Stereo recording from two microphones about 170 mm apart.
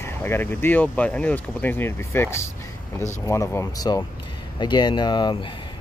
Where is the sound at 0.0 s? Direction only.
15° left (ahead or behind).